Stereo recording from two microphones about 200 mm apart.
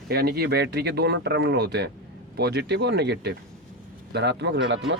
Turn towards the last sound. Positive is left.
turn(degrees=-65)  # may be behind; listen again after turning